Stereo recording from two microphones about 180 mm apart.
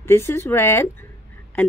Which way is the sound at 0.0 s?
15° left (ahead or behind).